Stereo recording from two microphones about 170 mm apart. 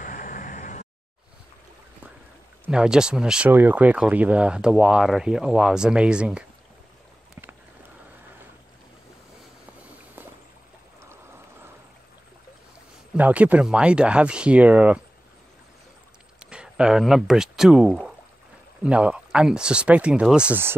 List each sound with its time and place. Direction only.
0.0 s vehicle: 50° left (ahead or behind)
2.6 s speech: 5° right (ahead or behind)
11.1 s vehicle: 15° right (ahead or behind)
13.1 s speech: 10° right (ahead or behind)
16.4 s speech: 5° right (ahead or behind)